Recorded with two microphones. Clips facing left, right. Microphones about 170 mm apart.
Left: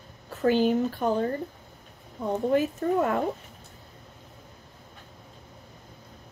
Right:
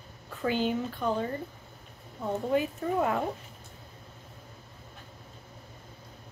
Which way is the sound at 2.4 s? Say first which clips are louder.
Left 5 dB; 50° left (ahead or behind).